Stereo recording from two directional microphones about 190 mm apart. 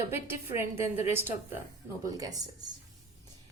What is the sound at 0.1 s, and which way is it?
A woman's voice, 15° right (ahead or behind).